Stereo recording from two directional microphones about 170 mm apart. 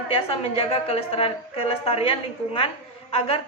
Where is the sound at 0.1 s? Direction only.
35° left (ahead or behind).